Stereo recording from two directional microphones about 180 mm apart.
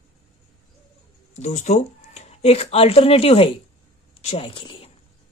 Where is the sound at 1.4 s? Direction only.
40° left (ahead or behind).